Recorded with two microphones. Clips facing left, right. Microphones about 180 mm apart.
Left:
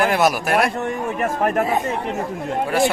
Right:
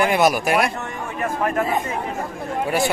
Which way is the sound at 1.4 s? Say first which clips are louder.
Left 2 dB; 45° left (ahead or behind).